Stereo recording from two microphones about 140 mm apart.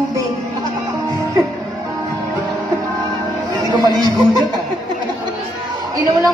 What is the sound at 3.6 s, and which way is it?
Speech, 25° right (ahead or behind).